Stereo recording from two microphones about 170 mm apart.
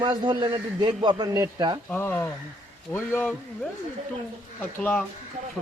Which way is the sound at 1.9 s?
10° left (ahead or behind).